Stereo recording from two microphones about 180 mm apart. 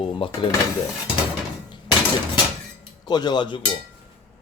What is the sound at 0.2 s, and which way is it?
Speech, 30° left (ahead or behind).